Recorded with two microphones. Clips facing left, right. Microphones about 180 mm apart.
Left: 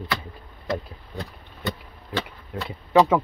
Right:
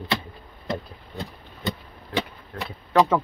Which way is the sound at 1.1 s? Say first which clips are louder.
Even; 15° right (ahead or behind).